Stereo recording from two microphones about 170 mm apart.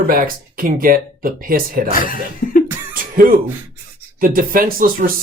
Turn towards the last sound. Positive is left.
turn(degrees=-55)  # may be behind; listen again after turning